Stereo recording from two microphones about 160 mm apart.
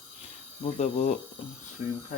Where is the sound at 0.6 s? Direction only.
45° left (ahead or behind).